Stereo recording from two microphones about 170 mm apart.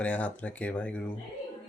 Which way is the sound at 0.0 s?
10° left (ahead or behind).